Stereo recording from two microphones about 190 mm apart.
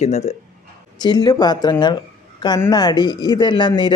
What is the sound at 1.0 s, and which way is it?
Speech, 20° left (ahead or behind).